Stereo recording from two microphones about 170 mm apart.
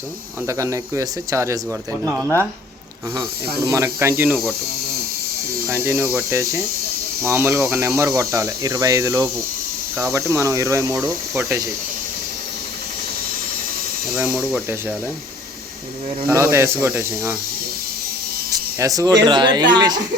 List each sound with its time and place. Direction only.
0.4 s speech: 20° right (ahead or behind)
3.6 s speech: 15° right (ahead or behind)
5.6 s speech: 15° right (ahead or behind)
14.3 s speech: 10° right (ahead or behind)
16.2 s speech: 15° right (ahead or behind)
18.5 s speech: 20° right (ahead or behind)